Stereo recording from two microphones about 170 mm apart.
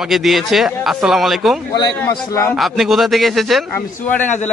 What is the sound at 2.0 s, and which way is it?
Speech, 20° left (ahead or behind).